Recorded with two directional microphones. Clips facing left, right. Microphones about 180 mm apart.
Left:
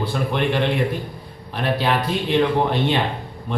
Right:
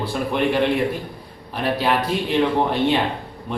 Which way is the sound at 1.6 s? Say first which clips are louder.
Even; 5° right (ahead or behind).